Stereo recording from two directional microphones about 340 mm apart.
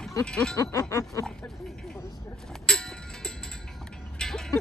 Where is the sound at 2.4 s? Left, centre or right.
Centre.